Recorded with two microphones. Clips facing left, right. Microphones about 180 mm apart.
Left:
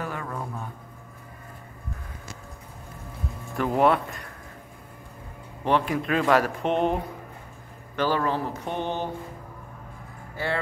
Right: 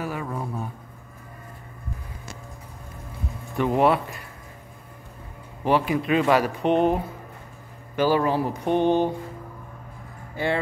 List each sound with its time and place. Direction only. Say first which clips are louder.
0.0 s a sound: right 3 dB; 10° right (ahead or behind)
3.5 s speech: right 1 dB; centre (ahead or behind)
5.6 s speech: right 2 dB; 5° right (ahead or behind)
10.3 s speech: right 4 dB; 15° right (ahead or behind)